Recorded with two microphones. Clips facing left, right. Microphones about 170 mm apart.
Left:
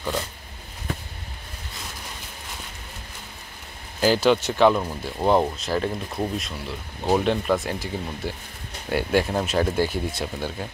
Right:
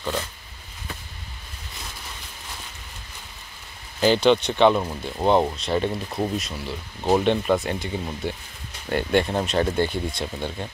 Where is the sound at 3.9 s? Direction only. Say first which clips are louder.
Right 1 dB; 5° left (ahead or behind).